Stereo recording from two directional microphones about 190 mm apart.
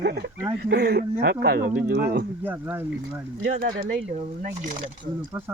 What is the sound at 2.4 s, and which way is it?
Speech, 10° right (ahead or behind).